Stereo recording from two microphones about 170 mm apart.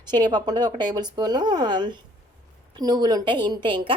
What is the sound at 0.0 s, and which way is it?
A woman's voice, 25° right (ahead or behind).